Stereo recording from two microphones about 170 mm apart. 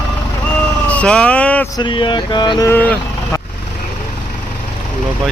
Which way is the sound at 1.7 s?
30° left (ahead or behind).